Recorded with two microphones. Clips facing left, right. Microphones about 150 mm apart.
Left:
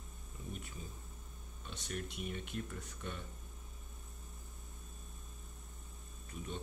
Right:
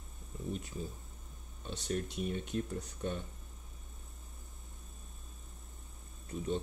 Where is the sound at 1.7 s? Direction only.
35° right (ahead or behind).